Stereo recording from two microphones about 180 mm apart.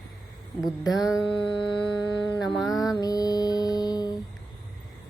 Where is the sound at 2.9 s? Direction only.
20° left (ahead or behind).